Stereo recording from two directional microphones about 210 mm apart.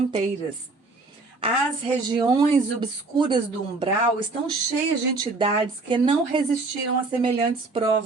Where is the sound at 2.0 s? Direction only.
20° right (ahead or behind).